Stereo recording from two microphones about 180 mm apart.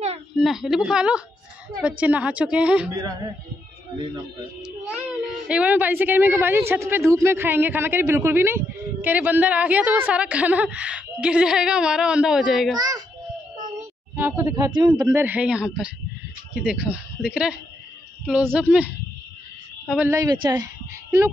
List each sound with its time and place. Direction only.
0.4 s speech: centre (ahead or behind)
2.9 s speech: 20° right (ahead or behind)
4.6 s child singing: 5° right (ahead or behind)
5.5 s speech: 10° right (ahead or behind)
12.7 s speech: 20° right (ahead or behind)
13.7 s a sound: 10° right (ahead or behind)
14.7 s speech: 25° right (ahead or behind)
15.2 s speech: 5° right (ahead or behind)
20.0 s speech: 15° right (ahead or behind)